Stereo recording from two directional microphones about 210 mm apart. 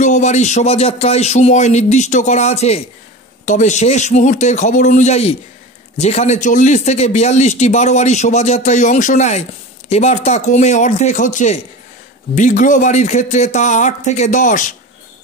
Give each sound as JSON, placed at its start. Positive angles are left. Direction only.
{"t": 0.0, "sound": "a man's voice", "side_deg": 35}